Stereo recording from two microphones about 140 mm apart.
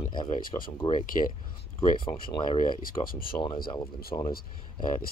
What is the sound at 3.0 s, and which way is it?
Speech, 90° left.